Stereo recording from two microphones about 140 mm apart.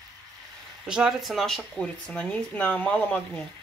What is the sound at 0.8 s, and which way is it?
Speech, 5° right (ahead or behind).